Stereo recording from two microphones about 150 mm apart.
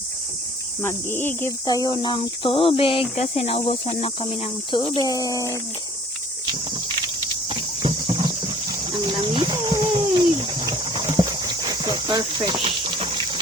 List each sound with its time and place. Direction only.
0.8 s speech: 15° left (ahead or behind)
6.4 s a sound: 30° right (ahead or behind)
12.6 s clip-clop: 35° right (ahead or behind)